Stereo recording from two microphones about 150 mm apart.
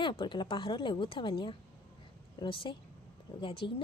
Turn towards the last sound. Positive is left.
turn(degrees=35)  # may be behind; listen again after turning